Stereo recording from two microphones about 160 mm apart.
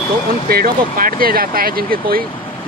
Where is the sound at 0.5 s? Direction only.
70° right (ahead or behind).